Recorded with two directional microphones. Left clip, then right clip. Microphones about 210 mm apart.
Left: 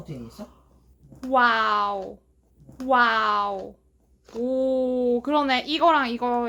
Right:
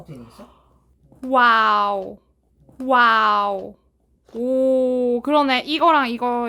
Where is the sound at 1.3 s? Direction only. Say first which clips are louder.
Right 5 dB; 35° right (ahead or behind).